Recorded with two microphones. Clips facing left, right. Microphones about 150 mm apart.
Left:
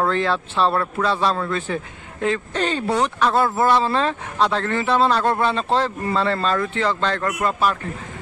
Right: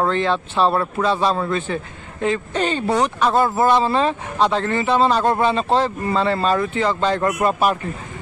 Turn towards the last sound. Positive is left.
turn(degrees=-15)  # may be behind; listen again after turning